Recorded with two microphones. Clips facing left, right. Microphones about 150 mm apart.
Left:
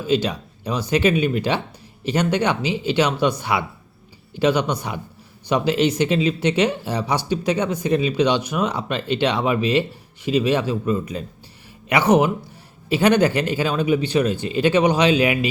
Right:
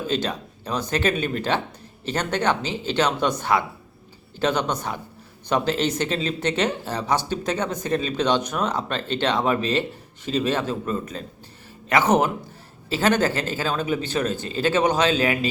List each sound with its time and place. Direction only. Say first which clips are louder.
0.1 s speech: left 9 dB; 10° left (ahead or behind)